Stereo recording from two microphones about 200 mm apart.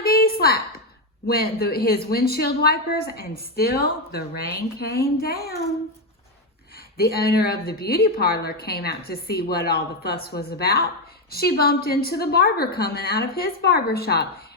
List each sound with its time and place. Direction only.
0.0 s a sound: 50° left (ahead or behind)
1.3 s a woman's voice: 50° left (ahead or behind)
6.9 s a woman's voice: 50° left (ahead or behind)